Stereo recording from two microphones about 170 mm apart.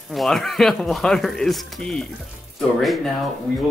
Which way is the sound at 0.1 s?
Centre (ahead or behind).